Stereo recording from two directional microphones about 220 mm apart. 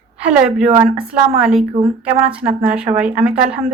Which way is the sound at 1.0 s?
5° right (ahead or behind).